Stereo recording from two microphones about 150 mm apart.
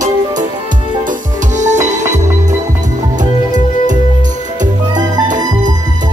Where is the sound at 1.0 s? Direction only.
55° right (ahead or behind).